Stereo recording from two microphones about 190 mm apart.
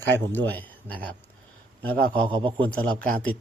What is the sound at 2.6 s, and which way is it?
Speech, 10° left (ahead or behind).